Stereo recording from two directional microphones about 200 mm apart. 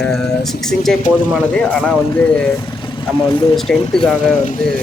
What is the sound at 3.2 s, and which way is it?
Speech, 25° left (ahead or behind).